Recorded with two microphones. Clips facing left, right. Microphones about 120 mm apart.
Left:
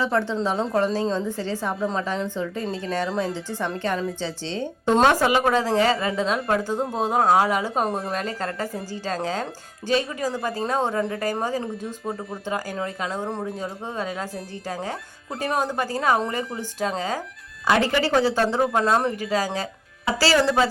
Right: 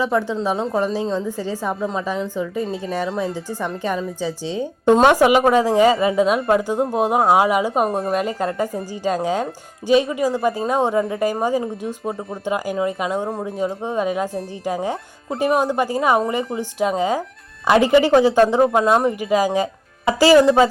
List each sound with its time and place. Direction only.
0.0 s speech: 15° right (ahead or behind)